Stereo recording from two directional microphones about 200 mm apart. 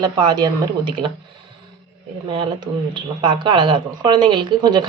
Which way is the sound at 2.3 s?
25° right (ahead or behind).